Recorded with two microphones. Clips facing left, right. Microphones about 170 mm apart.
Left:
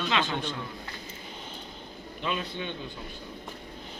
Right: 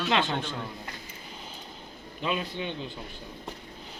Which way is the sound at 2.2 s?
15° right (ahead or behind).